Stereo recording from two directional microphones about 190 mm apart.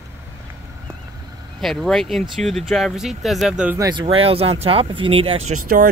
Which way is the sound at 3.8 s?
25° right (ahead or behind).